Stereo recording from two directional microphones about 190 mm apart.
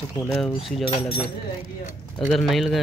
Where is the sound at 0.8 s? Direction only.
30° left (ahead or behind).